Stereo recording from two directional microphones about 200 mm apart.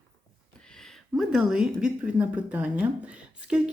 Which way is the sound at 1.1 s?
Centre (ahead or behind).